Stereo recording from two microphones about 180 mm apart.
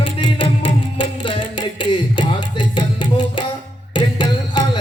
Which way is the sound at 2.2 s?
25° left (ahead or behind).